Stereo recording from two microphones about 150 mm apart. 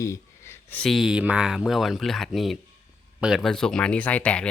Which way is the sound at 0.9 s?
5° right (ahead or behind).